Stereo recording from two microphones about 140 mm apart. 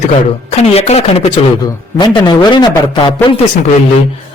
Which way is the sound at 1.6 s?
30° left (ahead or behind).